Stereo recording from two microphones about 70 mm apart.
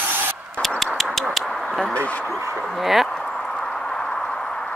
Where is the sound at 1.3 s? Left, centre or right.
Centre.